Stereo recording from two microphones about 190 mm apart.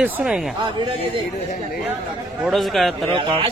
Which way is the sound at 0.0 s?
5° right (ahead or behind).